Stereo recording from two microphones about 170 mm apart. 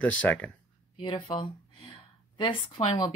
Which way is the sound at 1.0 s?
25° left (ahead or behind).